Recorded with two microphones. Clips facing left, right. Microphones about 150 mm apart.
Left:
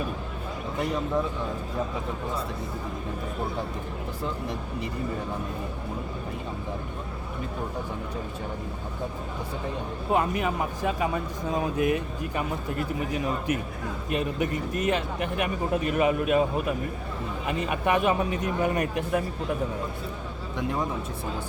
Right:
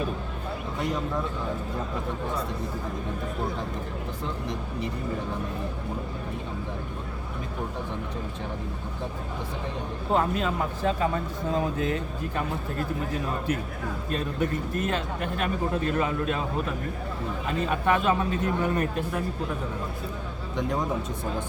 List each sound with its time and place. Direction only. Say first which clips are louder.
10.1 s speech: even; 15° left (ahead or behind)
14.1 s speech: left 1 dB; 15° left (ahead or behind)
17.6 s speech: even; 15° left (ahead or behind)